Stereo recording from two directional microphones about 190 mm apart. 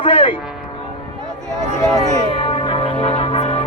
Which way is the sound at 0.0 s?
30° left (ahead or behind).